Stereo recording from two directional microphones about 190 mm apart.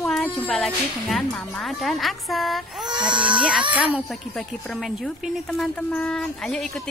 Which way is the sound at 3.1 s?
25° right (ahead or behind).